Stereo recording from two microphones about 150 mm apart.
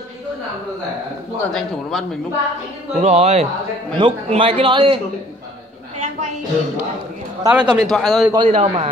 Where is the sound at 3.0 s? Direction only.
45° right (ahead or behind).